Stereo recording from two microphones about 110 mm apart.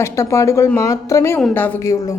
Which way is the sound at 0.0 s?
25° left (ahead or behind).